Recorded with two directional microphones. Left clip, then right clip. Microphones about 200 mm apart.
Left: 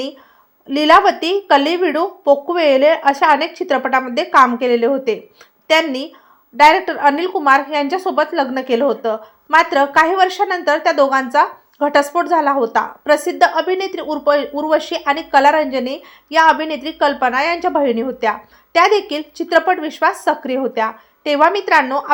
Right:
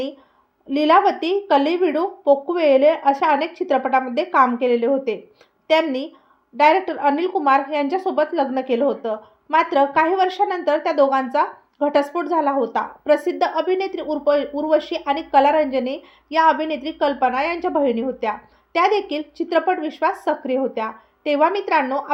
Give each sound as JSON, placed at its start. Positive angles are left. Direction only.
{"t": 0.7, "sound": "a woman's voice", "side_deg": 25}